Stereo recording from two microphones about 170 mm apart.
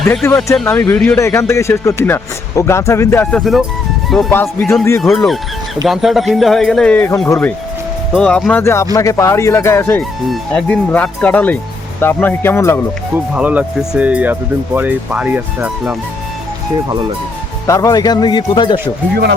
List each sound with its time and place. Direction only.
0.1 s speech: 5° left (ahead or behind)
3.3 s speech: centre (ahead or behind)
4.3 s speech: 10° left (ahead or behind)
10.2 s speech: 5° left (ahead or behind)
13.1 s speech: 10° right (ahead or behind)
16.9 s speech: 30° right (ahead or behind)
17.7 s speech: 20° left (ahead or behind)